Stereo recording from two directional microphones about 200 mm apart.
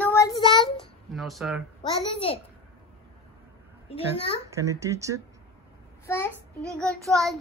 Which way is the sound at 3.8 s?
30° left (ahead or behind).